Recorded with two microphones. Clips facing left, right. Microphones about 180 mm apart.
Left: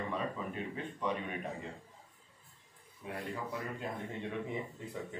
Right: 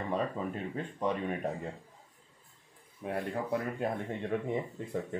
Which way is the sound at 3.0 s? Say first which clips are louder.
Right 7 dB; 60° right (ahead or behind).